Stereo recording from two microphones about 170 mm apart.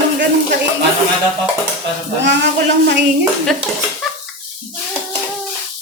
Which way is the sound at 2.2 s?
90° right.